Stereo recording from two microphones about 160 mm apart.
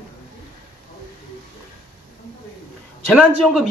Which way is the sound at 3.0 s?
Centre (ahead or behind).